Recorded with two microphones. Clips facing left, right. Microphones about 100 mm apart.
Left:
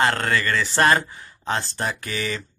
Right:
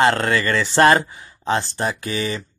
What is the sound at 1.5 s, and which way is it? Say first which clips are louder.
Speech: right 4 dB; 10° right (ahead or behind).